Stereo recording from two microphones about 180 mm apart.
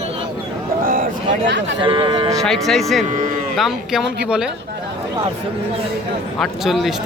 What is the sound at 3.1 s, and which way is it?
Speech, 45° right (ahead or behind).